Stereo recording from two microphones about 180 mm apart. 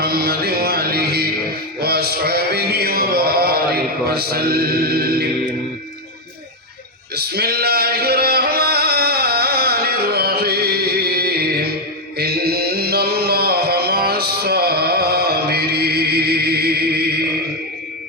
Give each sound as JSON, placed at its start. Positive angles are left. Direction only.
{"t": 0.0, "sound": "music", "side_deg": -60}
{"t": 7.2, "sound": "singing", "side_deg": -60}
{"t": 12.1, "sound": "music", "side_deg": -60}